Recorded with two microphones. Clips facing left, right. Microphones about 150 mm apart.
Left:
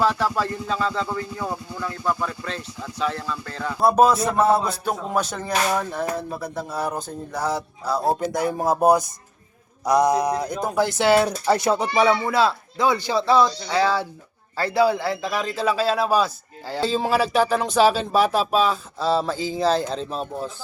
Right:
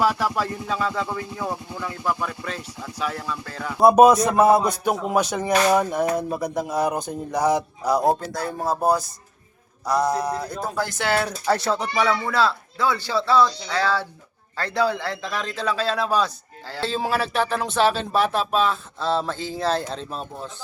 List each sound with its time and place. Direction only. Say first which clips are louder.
0.0 s speech: even; 10° right (ahead or behind)
8.2 s speech: left 5 dB; 20° left (ahead or behind)
12.3 s speech: left 2 dB; 15° left (ahead or behind)